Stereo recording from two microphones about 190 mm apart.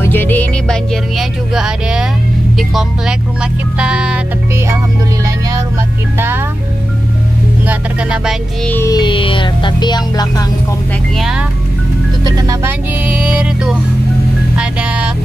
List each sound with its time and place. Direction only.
0.0 s speech: 10° left (ahead or behind)
3.7 s speech: 5° right (ahead or behind)
6.1 s music: 10° right (ahead or behind)
7.6 s music: 5° right (ahead or behind)
8.6 s speech: 15° left (ahead or behind)
11.1 s music: 5° right (ahead or behind)
12.4 s music: 15° right (ahead or behind)